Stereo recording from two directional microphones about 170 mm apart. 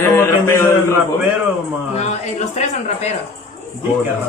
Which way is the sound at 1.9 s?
40° left (ahead or behind).